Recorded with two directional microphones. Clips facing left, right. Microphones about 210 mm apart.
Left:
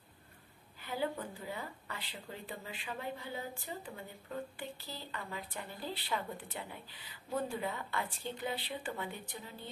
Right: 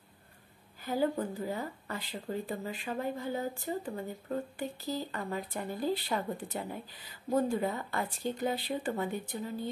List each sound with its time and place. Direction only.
0.7 s speech: 40° right (ahead or behind)